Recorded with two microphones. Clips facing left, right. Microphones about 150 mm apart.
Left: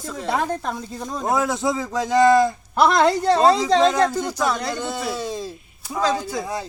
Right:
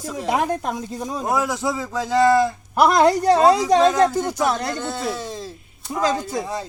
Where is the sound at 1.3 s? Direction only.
20° left (ahead or behind).